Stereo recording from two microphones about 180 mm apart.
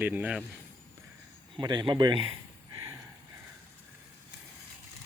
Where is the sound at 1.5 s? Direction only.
25° right (ahead or behind).